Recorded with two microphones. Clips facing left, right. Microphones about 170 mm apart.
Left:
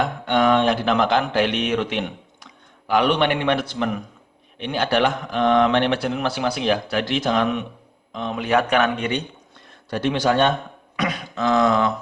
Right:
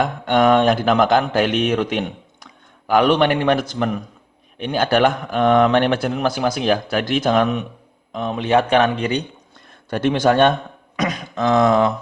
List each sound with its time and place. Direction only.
0.0 s a man's voice: 45° right (ahead or behind)
8.4 s speech: 30° right (ahead or behind)
9.9 s speech: 50° right (ahead or behind)
10.9 s beatboxing: 40° right (ahead or behind)
11.6 s speech: 30° right (ahead or behind)